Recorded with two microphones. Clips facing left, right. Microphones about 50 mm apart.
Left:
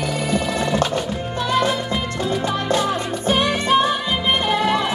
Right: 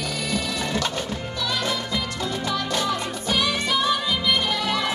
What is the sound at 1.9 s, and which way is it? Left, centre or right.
Music, centre.